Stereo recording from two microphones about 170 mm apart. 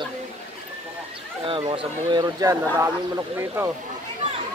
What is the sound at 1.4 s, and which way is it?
Speech, 30° right (ahead or behind).